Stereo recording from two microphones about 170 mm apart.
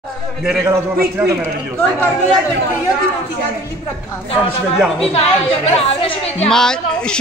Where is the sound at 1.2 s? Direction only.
10° right (ahead or behind).